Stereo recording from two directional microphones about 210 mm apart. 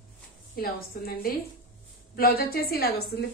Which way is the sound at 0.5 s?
45° left (ahead or behind).